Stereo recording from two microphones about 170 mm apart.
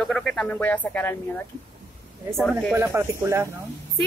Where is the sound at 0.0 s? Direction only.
5° left (ahead or behind).